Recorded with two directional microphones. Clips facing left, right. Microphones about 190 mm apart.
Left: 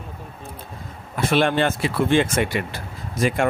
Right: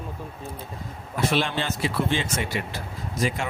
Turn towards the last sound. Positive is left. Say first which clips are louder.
# left 6 dB
turn(degrees=55)  # may be behind; listen again after turning